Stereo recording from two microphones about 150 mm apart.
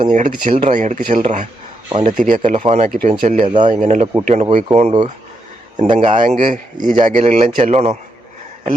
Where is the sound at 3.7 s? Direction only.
55° right (ahead or behind).